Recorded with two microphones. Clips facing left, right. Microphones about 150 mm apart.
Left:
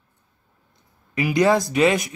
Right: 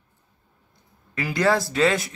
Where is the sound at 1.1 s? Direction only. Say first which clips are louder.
Left 4 dB; 15° left (ahead or behind).